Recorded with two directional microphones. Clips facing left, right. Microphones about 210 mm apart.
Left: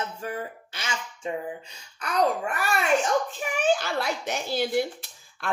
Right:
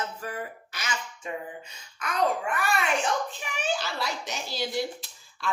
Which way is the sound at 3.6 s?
55° left (ahead or behind).